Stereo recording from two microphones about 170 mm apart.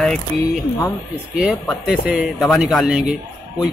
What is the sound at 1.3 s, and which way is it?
A man's voice, 5° right (ahead or behind).